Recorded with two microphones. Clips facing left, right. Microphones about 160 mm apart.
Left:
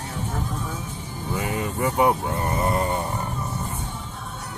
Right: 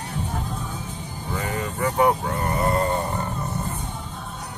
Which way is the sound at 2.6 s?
15° left (ahead or behind).